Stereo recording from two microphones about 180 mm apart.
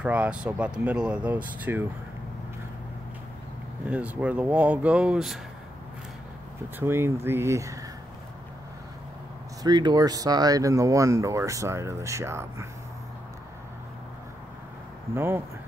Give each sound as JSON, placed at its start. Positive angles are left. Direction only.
{"t": 0.0, "sound": "speech", "side_deg": -5}
{"t": 3.9, "sound": "speech", "side_deg": -10}
{"t": 6.8, "sound": "speech", "side_deg": -15}
{"t": 9.6, "sound": "speech", "side_deg": -25}
{"t": 15.1, "sound": "speech", "side_deg": -15}